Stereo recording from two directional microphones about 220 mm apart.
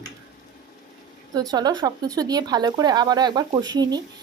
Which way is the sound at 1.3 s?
20° right (ahead or behind).